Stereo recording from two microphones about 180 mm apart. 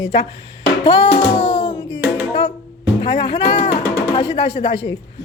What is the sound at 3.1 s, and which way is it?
Speech, 70° left (ahead or behind).